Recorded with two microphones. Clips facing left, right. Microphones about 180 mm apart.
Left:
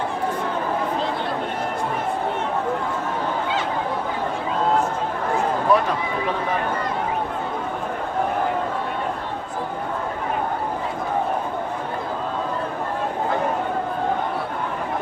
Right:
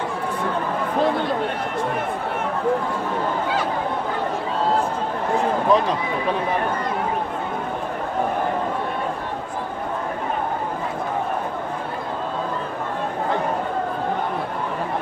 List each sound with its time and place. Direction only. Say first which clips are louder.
5.7 s speech: even; 20° right (ahead or behind)